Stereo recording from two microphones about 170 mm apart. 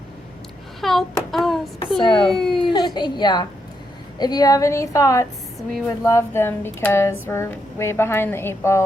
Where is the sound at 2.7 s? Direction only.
25° left (ahead or behind).